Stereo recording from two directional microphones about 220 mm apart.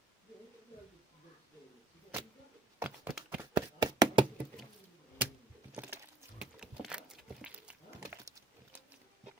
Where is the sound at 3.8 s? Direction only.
20° right (ahead or behind).